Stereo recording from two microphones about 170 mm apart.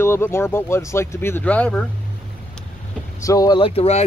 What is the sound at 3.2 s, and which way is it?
Speech, 20° left (ahead or behind).